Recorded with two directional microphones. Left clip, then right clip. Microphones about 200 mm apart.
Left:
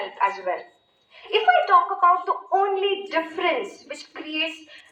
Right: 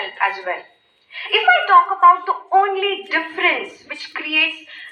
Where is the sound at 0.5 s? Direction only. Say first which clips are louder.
Right 2 dB; 20° right (ahead or behind).